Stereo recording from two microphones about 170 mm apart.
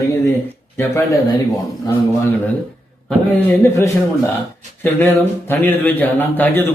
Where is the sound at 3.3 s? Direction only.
10° left (ahead or behind).